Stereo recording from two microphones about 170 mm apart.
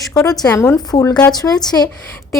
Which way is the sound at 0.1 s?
20° left (ahead or behind).